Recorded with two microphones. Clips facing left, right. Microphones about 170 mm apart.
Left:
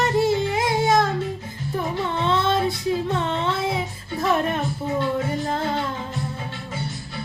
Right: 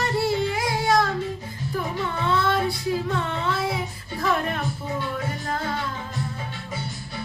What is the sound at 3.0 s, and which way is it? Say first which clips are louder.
Singing: left 2 dB; 20° left (ahead or behind).